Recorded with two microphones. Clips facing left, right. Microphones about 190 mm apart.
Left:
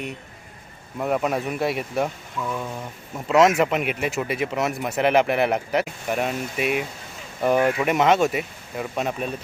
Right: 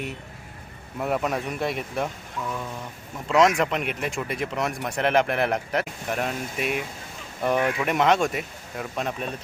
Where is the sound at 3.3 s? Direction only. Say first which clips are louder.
Left 3 dB; 5° left (ahead or behind).